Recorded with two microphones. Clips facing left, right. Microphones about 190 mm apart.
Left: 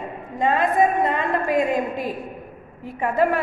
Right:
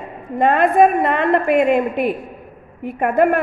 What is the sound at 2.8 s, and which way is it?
Speech, 55° right (ahead or behind).